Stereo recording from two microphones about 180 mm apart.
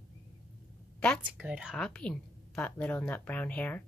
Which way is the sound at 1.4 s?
5° right (ahead or behind).